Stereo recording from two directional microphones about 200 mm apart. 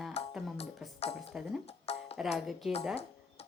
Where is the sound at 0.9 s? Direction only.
30° left (ahead or behind).